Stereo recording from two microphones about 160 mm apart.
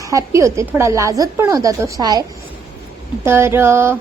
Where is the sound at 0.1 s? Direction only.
20° right (ahead or behind).